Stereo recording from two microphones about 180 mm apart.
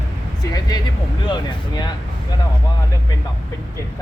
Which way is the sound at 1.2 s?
25° left (ahead or behind).